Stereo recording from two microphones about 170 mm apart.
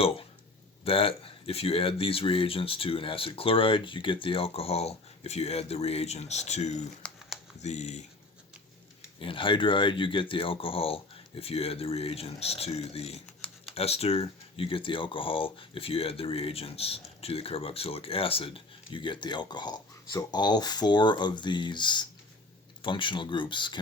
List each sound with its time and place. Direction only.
0.9 s speech: 35° left (ahead or behind)
7.0 s a sound: 5° left (ahead or behind)
7.6 s speech: 40° left (ahead or behind)
9.2 s speech: 30° left (ahead or behind)
13.4 s computer keyboard: 5° left (ahead or behind)
13.7 s speech: 35° left (ahead or behind)